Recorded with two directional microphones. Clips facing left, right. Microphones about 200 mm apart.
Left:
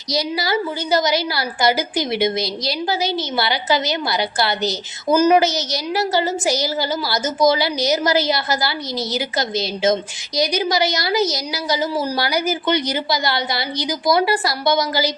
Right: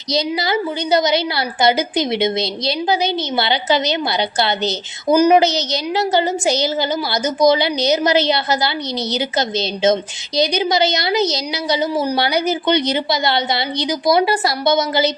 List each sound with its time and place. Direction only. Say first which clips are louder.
0.1 s a woman's voice: right 2 dB; 20° right (ahead or behind)